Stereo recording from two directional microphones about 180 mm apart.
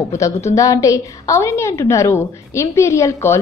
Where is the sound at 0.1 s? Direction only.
15° left (ahead or behind).